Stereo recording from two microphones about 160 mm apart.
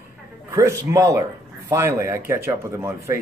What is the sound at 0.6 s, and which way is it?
Speech, 20° right (ahead or behind).